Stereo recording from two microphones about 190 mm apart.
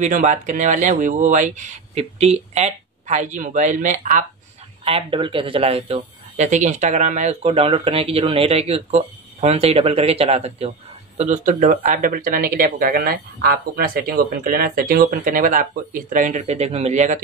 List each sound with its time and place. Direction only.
0.0 s speech: 40° right (ahead or behind)
4.8 s speech: 30° right (ahead or behind)